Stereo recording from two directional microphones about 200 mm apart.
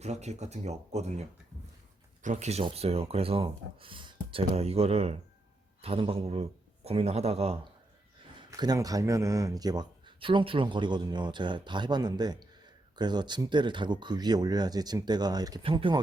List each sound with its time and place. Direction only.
0.0 s speech: 35° right (ahead or behind)
2.2 s speech: 35° right (ahead or behind)
8.4 s speech: 20° right (ahead or behind)